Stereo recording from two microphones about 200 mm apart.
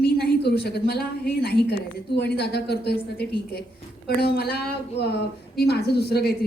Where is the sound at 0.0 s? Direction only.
50° left (ahead or behind).